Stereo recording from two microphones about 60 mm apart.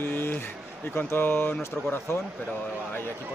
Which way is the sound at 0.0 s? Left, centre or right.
Left.